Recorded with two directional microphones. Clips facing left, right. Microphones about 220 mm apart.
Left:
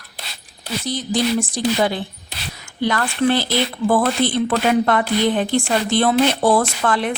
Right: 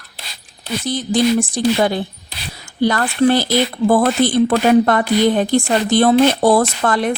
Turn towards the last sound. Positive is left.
turn(degrees=-40)  # may be behind; listen again after turning